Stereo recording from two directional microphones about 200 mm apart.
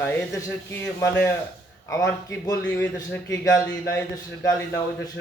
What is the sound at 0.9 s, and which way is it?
A man's voice, 10° left (ahead or behind).